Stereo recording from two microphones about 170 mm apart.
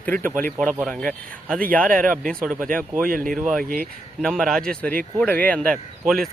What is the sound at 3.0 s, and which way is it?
Speech, 55° right (ahead or behind).